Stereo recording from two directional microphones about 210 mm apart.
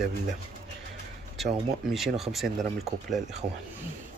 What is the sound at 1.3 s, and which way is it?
Speech, centre (ahead or behind).